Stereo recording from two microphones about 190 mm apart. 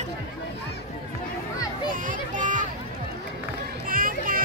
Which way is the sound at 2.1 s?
40° right (ahead or behind).